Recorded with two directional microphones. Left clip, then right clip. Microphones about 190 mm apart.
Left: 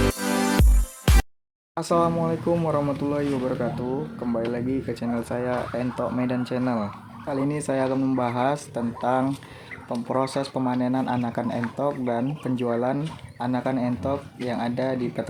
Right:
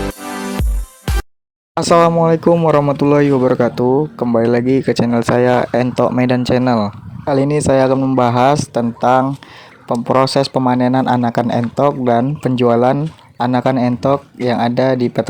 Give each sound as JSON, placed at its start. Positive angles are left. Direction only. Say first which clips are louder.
{"t": 1.1, "sound": "music", "louder": "right 1 dB", "side_deg": 0}
{"t": 1.7, "sound": "speech", "louder": "right 12 dB", "side_deg": -45}